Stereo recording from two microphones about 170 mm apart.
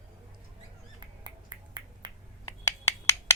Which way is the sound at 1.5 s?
25° right (ahead or behind).